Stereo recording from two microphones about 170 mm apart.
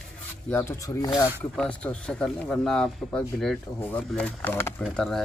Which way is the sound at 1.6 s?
5° left (ahead or behind).